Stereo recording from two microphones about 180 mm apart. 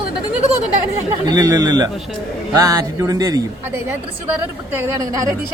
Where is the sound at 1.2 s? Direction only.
20° right (ahead or behind).